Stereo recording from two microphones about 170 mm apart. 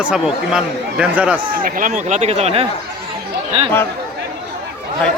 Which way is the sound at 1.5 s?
55° right (ahead or behind).